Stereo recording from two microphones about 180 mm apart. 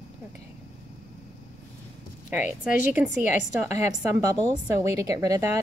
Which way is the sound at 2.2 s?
5° right (ahead or behind).